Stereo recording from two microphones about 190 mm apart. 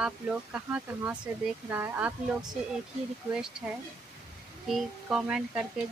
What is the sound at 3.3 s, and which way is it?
Speech, 5° right (ahead or behind).